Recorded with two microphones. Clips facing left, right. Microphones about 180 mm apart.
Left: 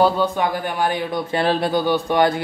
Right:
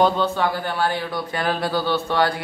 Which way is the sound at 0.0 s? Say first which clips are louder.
Left 1 dB; 15° left (ahead or behind).